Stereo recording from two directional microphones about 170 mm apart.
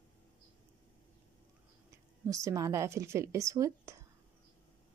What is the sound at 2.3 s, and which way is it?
Speech, 20° right (ahead or behind).